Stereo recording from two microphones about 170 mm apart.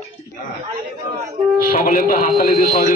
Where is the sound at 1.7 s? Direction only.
50° left (ahead or behind).